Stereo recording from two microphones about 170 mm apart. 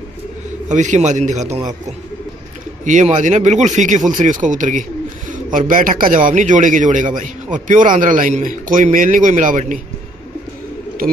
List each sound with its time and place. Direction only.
0.7 s a man's voice: 45° right (ahead or behind)
2.8 s a man's voice: 45° right (ahead or behind)